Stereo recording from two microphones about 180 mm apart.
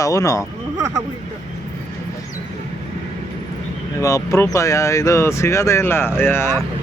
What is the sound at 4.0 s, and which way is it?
Speech, 15° left (ahead or behind).